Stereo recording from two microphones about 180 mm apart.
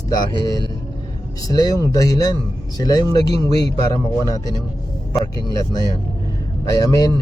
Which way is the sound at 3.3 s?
35° right (ahead or behind).